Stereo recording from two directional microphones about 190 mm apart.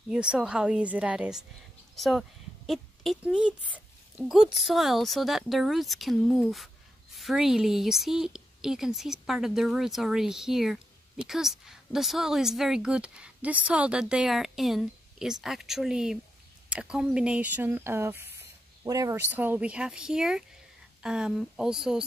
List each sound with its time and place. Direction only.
0.1 s a woman's voice: 5° right (ahead or behind)